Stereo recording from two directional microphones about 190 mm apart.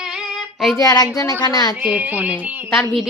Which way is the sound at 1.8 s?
10° right (ahead or behind).